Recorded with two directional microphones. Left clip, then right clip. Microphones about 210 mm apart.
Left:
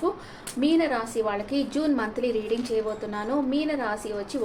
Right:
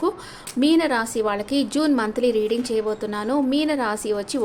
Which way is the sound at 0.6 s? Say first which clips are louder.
Right 4 dB; 50° right (ahead or behind).